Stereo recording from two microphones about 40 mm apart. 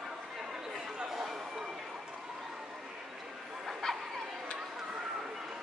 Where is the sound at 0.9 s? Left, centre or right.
Centre.